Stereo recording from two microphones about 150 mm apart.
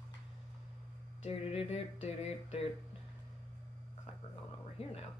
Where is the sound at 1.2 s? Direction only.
40° left (ahead or behind).